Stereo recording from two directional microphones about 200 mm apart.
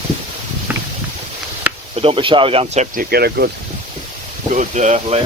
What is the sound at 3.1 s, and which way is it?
Speech, 55° right (ahead or behind).